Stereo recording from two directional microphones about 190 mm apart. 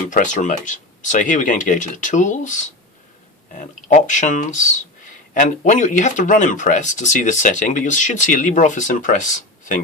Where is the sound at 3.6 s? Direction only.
40° left (ahead or behind).